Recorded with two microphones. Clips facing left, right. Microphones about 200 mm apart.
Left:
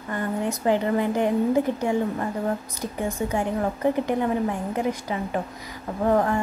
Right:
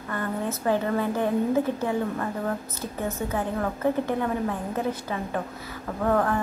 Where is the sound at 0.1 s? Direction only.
15° left (ahead or behind).